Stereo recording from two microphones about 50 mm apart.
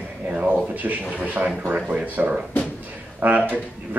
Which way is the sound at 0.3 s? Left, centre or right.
Right.